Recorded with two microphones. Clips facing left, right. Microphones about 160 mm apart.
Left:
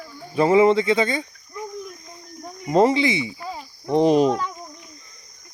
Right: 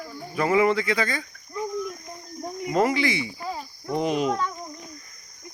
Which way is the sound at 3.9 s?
35° left (ahead or behind).